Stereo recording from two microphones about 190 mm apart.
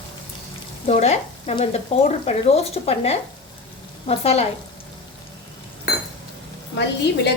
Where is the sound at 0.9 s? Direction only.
35° left (ahead or behind).